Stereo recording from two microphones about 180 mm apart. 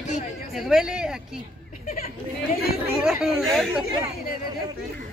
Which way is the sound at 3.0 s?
Centre (ahead or behind).